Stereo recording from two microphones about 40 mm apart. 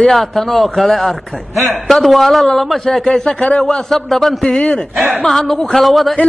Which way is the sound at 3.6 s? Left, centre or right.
Centre.